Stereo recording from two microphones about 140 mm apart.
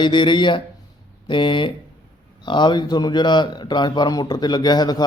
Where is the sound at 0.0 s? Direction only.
35° left (ahead or behind).